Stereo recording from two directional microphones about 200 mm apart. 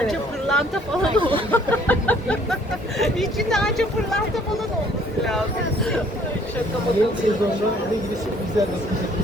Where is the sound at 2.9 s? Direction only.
Centre (ahead or behind).